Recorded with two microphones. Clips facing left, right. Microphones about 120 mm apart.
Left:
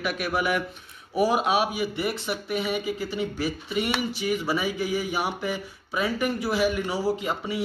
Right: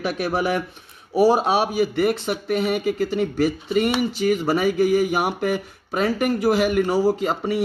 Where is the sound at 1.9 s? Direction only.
60° right (ahead or behind).